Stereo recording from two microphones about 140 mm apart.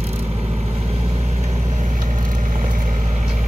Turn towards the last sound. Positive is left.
turn(degrees=-55)  # may be behind; listen again after turning